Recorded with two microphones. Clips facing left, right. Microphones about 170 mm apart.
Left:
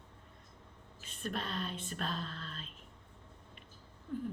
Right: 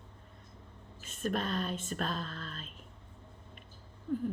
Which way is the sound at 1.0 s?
45° right (ahead or behind).